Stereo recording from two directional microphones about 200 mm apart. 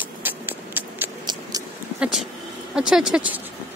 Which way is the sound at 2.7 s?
5° right (ahead or behind).